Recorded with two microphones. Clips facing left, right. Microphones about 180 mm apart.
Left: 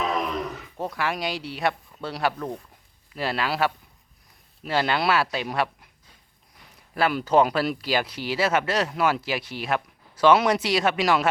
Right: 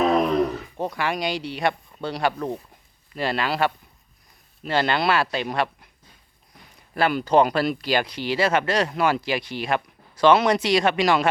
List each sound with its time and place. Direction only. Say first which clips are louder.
0.0 s a sound: right 8 dB; 35° right (ahead or behind)
0.8 s speech: right 2 dB; centre (ahead or behind)
6.9 s speech: right 1 dB; 5° left (ahead or behind)